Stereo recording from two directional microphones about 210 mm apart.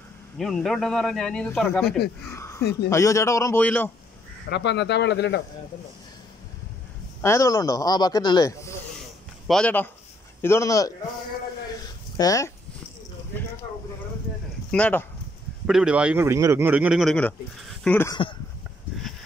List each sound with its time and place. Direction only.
0.4 s speech: centre (ahead or behind)
2.2 s speech: 10° left (ahead or behind)
4.5 s speech: 55° left (ahead or behind)
7.2 s speech: 15° left (ahead or behind)
12.2 s speech: 15° left (ahead or behind)
14.7 s speech: 5° left (ahead or behind)
15.6 s speech: 5° right (ahead or behind)